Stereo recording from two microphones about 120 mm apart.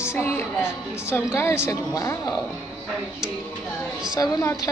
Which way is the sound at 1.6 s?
25° left (ahead or behind).